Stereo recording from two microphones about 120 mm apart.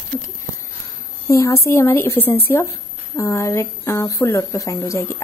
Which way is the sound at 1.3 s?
25° left (ahead or behind).